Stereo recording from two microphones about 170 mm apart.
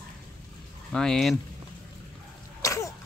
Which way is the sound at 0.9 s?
5° left (ahead or behind).